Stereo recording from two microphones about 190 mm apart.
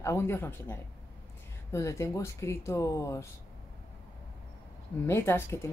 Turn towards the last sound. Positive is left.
turn(degrees=15)  # may be behind; listen again after turning